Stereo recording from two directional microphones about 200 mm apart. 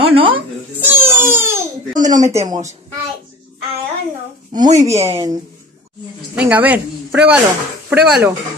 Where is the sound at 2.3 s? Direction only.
15° right (ahead or behind).